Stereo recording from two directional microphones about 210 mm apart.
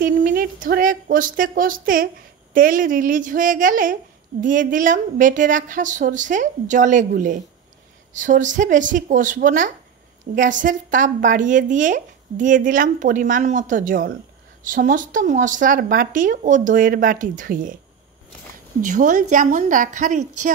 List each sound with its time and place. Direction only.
0.0 s a woman's voice: 40° right (ahead or behind)
18.8 s speech: 40° right (ahead or behind)